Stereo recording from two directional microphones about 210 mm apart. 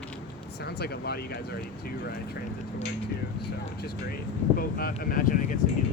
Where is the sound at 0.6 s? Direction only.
50° left (ahead or behind).